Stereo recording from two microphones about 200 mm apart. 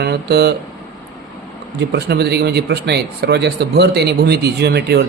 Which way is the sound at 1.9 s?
55° right (ahead or behind).